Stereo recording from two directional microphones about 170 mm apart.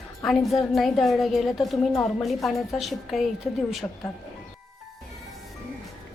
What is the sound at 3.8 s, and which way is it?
Speech, 15° left (ahead or behind).